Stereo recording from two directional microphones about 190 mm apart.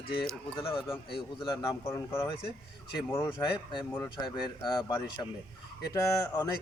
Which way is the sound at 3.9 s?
15° left (ahead or behind).